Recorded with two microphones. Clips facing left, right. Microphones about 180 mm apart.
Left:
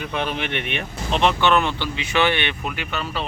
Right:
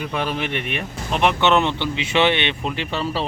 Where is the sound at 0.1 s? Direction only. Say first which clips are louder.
Even; 5° right (ahead or behind).